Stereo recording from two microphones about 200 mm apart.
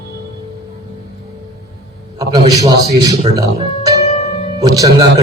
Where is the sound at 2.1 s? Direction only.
20° right (ahead or behind).